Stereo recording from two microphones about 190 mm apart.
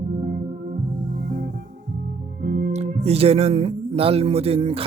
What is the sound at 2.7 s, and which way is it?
Speech, 35° right (ahead or behind).